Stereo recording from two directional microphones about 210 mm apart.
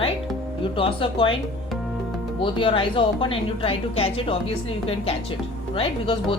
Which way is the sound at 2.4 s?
25° left (ahead or behind).